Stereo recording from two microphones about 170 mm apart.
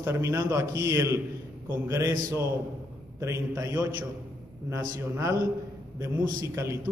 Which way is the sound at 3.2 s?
15° right (ahead or behind).